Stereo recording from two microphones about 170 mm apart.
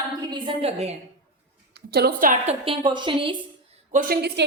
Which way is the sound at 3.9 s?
50° right (ahead or behind).